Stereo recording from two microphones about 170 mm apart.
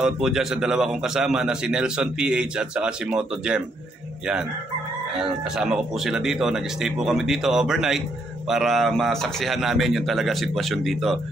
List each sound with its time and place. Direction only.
0.0 s speech: 5° right (ahead or behind)
5.1 s speech: 5° right (ahead or behind)